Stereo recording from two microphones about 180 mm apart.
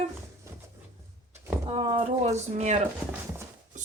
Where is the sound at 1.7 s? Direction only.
30° right (ahead or behind).